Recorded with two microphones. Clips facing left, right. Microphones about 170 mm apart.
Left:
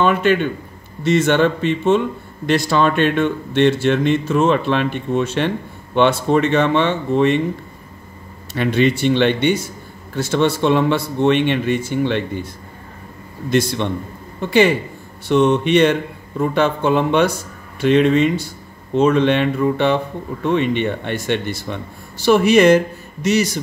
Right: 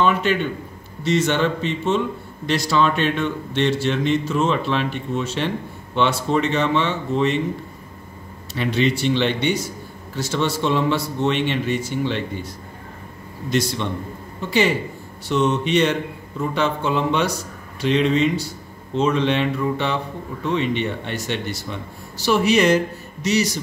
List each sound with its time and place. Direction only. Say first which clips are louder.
0.0 s speech: left 4 dB; 55° left (ahead or behind)
8.5 s speech: left 4 dB; 55° left (ahead or behind)
13.5 s speech: left 4 dB; 55° left (ahead or behind)
15.2 s speech: left 5 dB; 60° left (ahead or behind)